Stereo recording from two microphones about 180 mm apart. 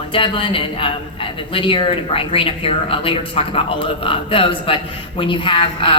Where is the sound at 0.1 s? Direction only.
30° left (ahead or behind).